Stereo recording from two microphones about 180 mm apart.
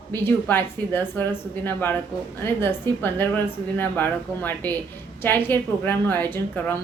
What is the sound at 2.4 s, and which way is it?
A woman's voice, 10° left (ahead or behind).